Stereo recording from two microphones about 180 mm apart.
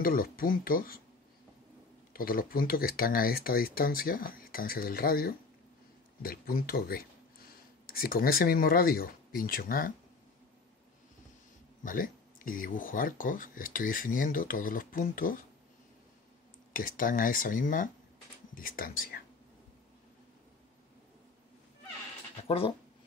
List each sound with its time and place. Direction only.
0.0 s speech: 55° left (ahead or behind)
2.1 s speech: 55° left (ahead or behind)
11.8 s speech: 50° left (ahead or behind)
16.7 s speech: 50° left (ahead or behind)
22.5 s speech: 30° left (ahead or behind)